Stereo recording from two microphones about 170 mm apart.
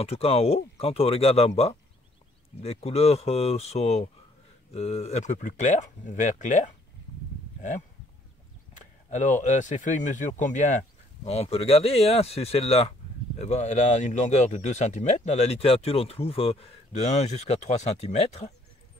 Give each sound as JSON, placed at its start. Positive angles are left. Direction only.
{"t": 0.0, "sound": "speech", "side_deg": 35}
{"t": 2.6, "sound": "speech", "side_deg": 35}
{"t": 8.7, "sound": "speech", "side_deg": 45}